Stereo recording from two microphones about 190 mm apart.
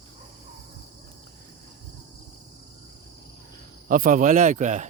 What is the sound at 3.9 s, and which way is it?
Speech, 45° right (ahead or behind).